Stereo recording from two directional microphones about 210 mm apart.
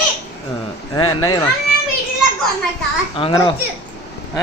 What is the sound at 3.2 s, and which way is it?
Speech, 25° left (ahead or behind).